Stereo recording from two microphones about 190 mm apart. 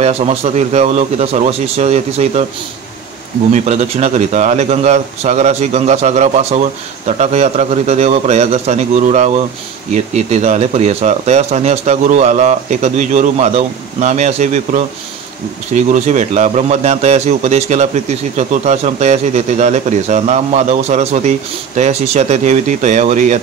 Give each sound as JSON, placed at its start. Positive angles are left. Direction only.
{"t": 0.0, "sound": "a man's voice", "side_deg": -35}
{"t": 3.5, "sound": "a man's voice", "side_deg": -35}